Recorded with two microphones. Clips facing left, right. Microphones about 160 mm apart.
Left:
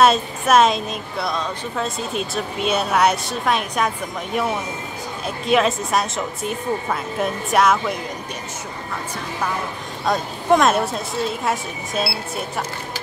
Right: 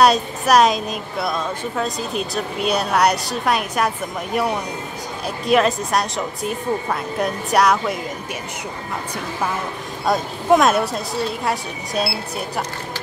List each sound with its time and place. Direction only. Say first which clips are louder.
0.0 s speech: right 1 dB; centre (ahead or behind)
10.0 s speech: right 1 dB; centre (ahead or behind)